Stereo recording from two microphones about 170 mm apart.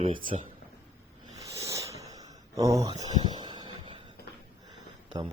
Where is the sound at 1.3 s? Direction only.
20° right (ahead or behind).